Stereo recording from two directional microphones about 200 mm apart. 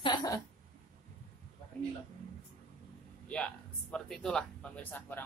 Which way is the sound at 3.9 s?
5° left (ahead or behind).